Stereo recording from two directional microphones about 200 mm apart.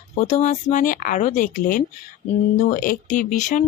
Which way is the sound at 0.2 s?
35° left (ahead or behind).